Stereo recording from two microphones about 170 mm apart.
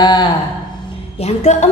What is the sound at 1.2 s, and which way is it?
Speech, 40° left (ahead or behind).